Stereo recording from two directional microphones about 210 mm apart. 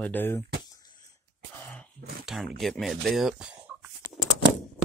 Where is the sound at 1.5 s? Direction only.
10° left (ahead or behind).